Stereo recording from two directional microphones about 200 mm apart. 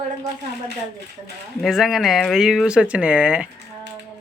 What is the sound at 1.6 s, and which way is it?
Speech, centre (ahead or behind).